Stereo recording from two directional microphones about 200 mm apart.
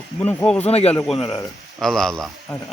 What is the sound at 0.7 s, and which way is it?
Speech, 30° left (ahead or behind).